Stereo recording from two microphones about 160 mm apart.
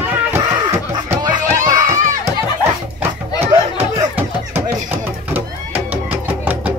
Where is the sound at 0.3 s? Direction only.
15° right (ahead or behind).